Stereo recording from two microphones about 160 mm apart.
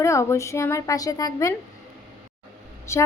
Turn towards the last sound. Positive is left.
turn(degrees=15)  # may be behind; listen again after turning